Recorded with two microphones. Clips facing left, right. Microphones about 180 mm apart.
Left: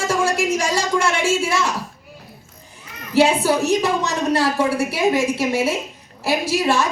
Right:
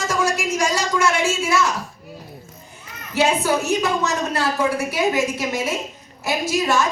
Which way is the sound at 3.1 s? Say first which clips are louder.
Left 3 dB; 30° left (ahead or behind).